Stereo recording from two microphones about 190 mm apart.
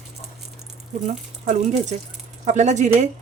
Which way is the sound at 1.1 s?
40° right (ahead or behind).